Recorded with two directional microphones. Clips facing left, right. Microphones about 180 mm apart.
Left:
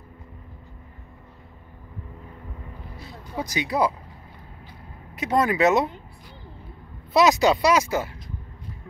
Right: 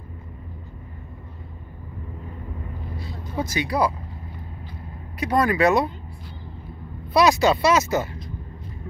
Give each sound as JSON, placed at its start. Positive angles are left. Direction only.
{"t": 3.3, "sound": "speech", "side_deg": 15}
{"t": 5.2, "sound": "speech", "side_deg": 20}
{"t": 7.2, "sound": "speech", "side_deg": 15}